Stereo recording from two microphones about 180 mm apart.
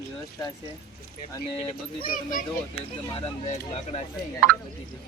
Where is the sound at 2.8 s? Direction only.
35° left (ahead or behind).